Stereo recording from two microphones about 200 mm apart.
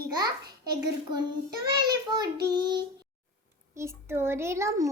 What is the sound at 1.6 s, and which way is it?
Speech, 20° right (ahead or behind).